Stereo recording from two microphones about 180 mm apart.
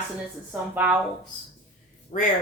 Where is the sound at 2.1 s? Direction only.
35° left (ahead or behind).